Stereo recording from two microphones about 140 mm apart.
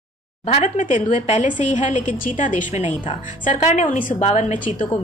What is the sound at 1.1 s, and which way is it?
A woman's voice, 65° left (ahead or behind).